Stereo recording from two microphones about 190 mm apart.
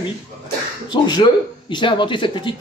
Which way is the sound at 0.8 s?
25° left (ahead or behind).